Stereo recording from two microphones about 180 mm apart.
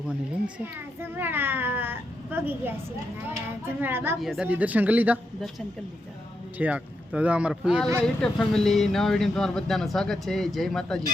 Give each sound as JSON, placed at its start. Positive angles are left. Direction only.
{"t": 1.1, "sound": "speech", "side_deg": -10}